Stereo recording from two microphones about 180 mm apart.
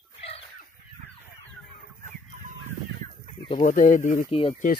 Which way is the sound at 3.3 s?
30° left (ahead or behind).